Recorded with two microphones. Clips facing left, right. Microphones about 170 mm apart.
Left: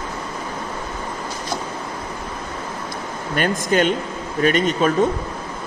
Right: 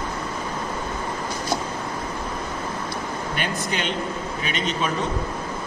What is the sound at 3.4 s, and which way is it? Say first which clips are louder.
A man's voice: left 11 dB; 45° left (ahead or behind).